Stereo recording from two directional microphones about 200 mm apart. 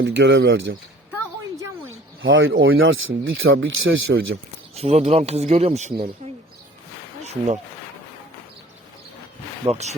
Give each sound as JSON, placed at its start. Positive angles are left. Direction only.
{"t": 0.0, "sound": "speech", "side_deg": -65}
{"t": 1.9, "sound": "speech", "side_deg": -75}
{"t": 4.7, "sound": "speech", "side_deg": -30}
{"t": 9.6, "sound": "speech", "side_deg": -35}